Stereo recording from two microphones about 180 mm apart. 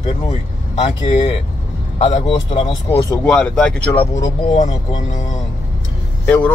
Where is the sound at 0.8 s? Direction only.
35° left (ahead or behind).